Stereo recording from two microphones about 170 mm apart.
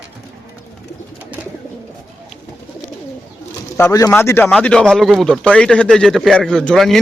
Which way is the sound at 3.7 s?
15° left (ahead or behind).